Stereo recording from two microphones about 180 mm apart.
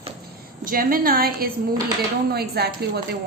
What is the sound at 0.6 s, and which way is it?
A woman's voice, 50° right (ahead or behind).